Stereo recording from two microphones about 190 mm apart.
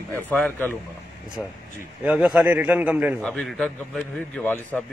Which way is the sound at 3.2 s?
5° left (ahead or behind).